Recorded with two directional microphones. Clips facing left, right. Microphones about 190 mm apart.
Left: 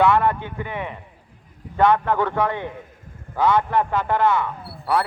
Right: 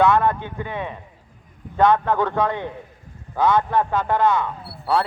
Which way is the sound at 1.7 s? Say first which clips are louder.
Right 1 dB; 15° right (ahead or behind).